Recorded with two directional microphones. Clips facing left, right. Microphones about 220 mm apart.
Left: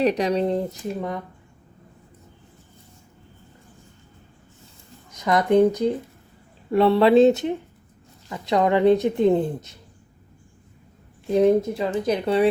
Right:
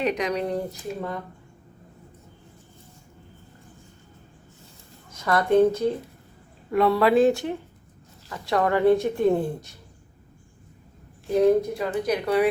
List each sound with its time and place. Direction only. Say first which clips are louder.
0.0 s a woman's voice: left 5 dB; 35° left (ahead or behind)
5.1 s speech: left 2 dB; 20° left (ahead or behind)
6.7 s a woman's voice: left 3 dB; 30° left (ahead or behind)
11.3 s a woman's voice: left 1 dB; 20° left (ahead or behind)